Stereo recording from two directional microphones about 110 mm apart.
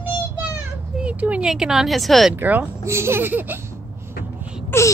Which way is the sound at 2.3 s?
15° right (ahead or behind).